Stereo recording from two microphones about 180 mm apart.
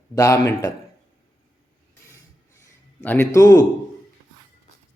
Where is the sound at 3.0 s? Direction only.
15° left (ahead or behind).